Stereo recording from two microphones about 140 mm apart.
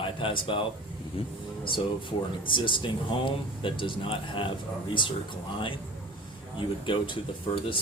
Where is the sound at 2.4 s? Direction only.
35° left (ahead or behind).